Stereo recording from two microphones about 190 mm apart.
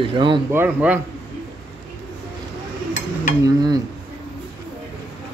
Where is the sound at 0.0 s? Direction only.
25° right (ahead or behind).